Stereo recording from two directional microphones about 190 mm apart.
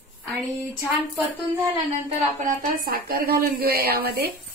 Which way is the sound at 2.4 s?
50° right (ahead or behind).